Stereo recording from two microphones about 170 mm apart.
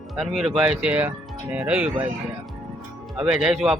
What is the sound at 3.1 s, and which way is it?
Speech, 5° right (ahead or behind).